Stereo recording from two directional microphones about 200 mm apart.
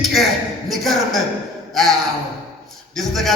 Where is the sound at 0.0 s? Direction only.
Centre (ahead or behind).